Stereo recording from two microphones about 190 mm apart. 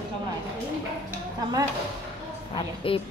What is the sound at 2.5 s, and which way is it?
Speech, 30° left (ahead or behind).